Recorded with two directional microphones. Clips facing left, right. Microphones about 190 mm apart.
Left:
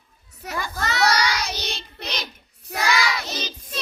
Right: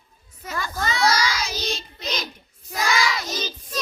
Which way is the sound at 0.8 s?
70° left (ahead or behind).